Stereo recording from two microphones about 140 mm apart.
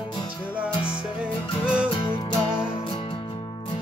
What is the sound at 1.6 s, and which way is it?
Music, 5° right (ahead or behind).